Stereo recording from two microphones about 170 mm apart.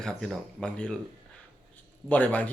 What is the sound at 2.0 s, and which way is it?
Speech, 10° left (ahead or behind).